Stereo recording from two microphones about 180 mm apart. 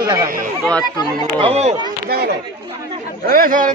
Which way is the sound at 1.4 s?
35° right (ahead or behind).